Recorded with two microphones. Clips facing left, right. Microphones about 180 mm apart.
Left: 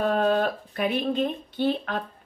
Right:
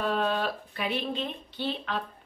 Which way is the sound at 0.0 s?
45° left (ahead or behind).